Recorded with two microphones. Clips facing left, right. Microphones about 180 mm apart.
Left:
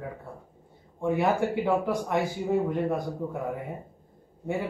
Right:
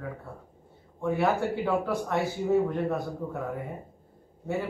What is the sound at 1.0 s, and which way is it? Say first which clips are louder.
A man's voice: left 1 dB; 15° left (ahead or behind).